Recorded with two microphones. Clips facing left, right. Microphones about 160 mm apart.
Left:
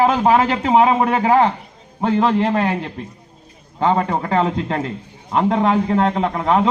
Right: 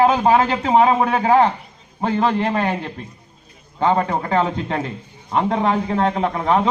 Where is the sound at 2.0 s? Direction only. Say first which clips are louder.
Left 2 dB; 30° left (ahead or behind).